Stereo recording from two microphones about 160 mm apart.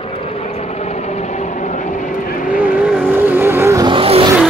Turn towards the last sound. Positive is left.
turn(degrees=-35)  # may be behind; listen again after turning